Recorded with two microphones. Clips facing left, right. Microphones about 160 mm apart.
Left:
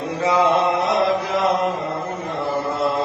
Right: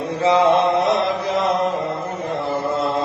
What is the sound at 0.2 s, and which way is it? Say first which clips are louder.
Mantra: right 3 dB; 25° right (ahead or behind).